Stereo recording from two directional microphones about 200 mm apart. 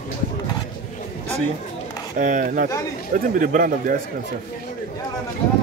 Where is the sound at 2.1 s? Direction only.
40° right (ahead or behind).